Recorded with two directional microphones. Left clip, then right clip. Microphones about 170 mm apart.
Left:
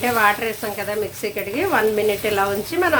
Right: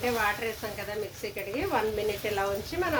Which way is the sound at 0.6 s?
25° left (ahead or behind).